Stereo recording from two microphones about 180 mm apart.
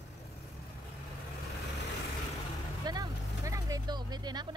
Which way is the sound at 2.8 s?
20° right (ahead or behind).